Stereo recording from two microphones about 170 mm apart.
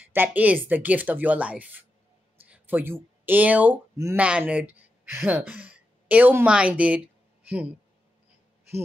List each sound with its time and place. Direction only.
0.0 s speech: 10° right (ahead or behind)